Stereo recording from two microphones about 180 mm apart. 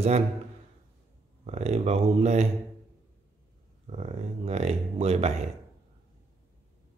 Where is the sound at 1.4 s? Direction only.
35° right (ahead or behind).